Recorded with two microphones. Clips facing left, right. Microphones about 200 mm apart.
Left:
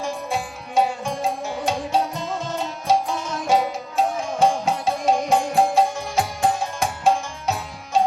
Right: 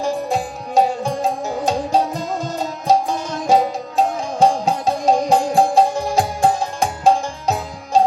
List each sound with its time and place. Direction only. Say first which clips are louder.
0.0 s music: right 6 dB; 35° right (ahead or behind)